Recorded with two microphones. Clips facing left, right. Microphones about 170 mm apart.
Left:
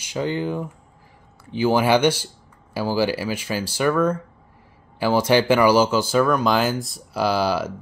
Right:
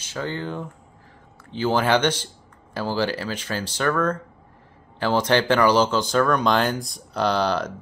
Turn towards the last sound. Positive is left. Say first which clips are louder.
# left 1 dB
turn(degrees=5)  # may be behind; listen again after turning